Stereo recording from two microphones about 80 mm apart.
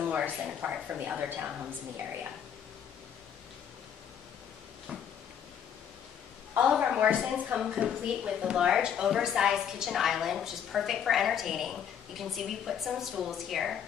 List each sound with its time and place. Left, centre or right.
0.0 s a woman's voice: centre
6.8 s a woman's voice: centre
7.6 s a woman's voice: centre